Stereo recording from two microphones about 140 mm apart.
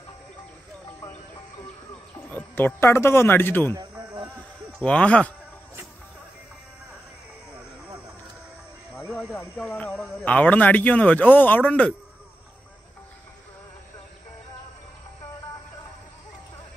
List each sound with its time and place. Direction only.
2.2 s speech: 15° left (ahead or behind)
3.7 s a sound: 30° right (ahead or behind)
4.7 s speech: 10° left (ahead or behind)
9.4 s speech: 15° left (ahead or behind)